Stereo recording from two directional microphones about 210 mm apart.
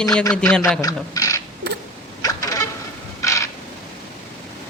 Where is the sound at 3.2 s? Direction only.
15° left (ahead or behind).